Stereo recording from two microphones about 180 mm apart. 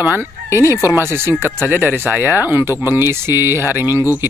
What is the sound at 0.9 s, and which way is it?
Speech, 15° right (ahead or behind).